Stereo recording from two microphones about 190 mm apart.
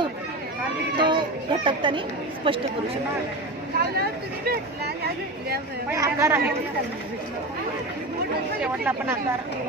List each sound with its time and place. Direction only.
0.9 s a child's voice: 25° right (ahead or behind)
3.8 s speech: 55° right (ahead or behind)
5.9 s a woman's voice: 15° right (ahead or behind)
8.8 s a woman's voice: 10° right (ahead or behind)